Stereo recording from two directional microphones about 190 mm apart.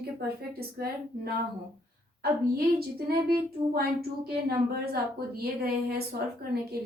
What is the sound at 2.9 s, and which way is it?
Speech, 55° right (ahead or behind).